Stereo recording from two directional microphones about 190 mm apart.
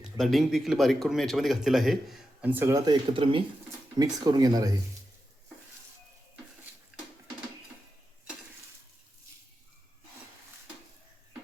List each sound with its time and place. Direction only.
0.0 s speech: centre (ahead or behind); by 4.8 s 20° right (ahead or behind)